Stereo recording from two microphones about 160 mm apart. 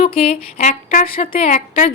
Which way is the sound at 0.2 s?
45° left (ahead or behind).